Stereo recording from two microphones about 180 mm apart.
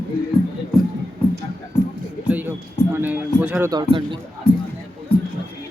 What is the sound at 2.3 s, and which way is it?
Music, 10° right (ahead or behind).